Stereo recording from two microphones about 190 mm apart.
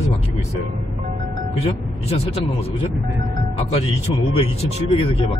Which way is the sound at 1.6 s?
30° left (ahead or behind).